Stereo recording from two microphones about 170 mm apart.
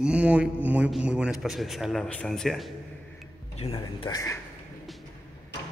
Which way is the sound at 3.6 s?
30° left (ahead or behind).